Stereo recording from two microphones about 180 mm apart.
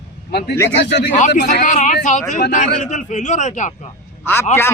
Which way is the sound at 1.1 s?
45° left (ahead or behind).